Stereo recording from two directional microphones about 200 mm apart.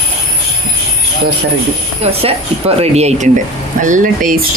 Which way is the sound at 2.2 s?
30° right (ahead or behind).